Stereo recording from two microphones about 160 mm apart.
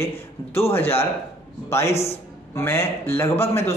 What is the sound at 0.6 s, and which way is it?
A man's voice, 15° left (ahead or behind).